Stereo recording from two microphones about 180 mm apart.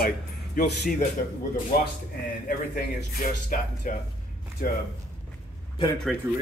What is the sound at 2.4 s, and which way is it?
A man's voice, 50° left (ahead or behind).